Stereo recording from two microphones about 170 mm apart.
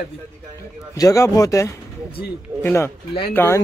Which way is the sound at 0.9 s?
20° left (ahead or behind).